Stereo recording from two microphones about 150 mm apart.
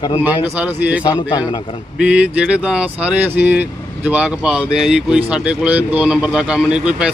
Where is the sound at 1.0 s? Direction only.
25° left (ahead or behind).